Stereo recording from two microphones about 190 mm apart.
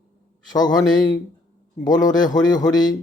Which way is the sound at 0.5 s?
20° left (ahead or behind).